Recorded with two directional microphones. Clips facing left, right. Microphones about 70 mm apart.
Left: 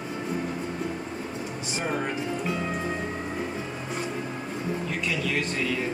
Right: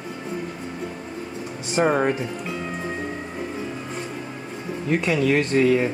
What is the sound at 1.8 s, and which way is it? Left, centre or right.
Speech, right.